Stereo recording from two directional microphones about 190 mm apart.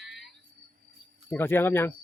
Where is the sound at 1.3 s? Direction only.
10° left (ahead or behind).